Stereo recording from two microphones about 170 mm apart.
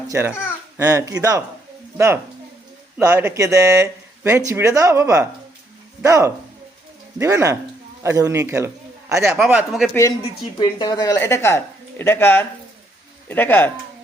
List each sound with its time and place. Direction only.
0.1 s speech: 15° right (ahead or behind)
3.0 s a man's voice: 15° right (ahead or behind)
9.4 s speech: 5° right (ahead or behind)
10.6 s speech: 25° left (ahead or behind); by 13.7 s 10° left (ahead or behind)